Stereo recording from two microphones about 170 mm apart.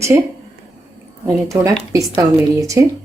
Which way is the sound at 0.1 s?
15° right (ahead or behind).